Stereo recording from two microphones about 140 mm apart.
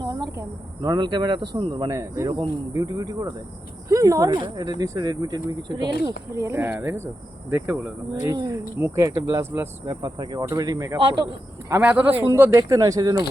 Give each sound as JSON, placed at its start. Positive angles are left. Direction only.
{"t": 0.0, "sound": "speech", "side_deg": -25}
{"t": 8.4, "sound": "speech", "side_deg": -25}
{"t": 11.7, "sound": "speech", "side_deg": -10}
{"t": 12.3, "sound": "speech", "side_deg": -20}